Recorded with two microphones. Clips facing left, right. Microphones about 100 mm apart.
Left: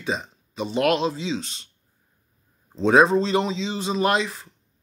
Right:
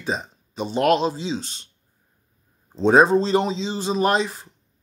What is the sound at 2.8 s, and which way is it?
Speech, 35° right (ahead or behind).